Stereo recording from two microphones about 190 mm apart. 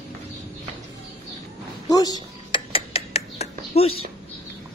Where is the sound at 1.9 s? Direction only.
20° left (ahead or behind).